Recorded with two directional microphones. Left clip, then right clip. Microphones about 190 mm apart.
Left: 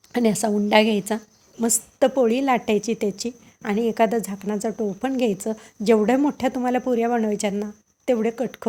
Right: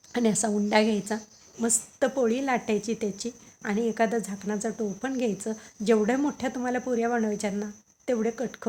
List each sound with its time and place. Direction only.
0.1 s a woman's voice: 30° left (ahead or behind)